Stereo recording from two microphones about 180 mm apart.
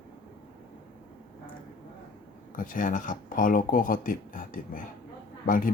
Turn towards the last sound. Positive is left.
turn(degrees=50)  # may be behind; listen again after turning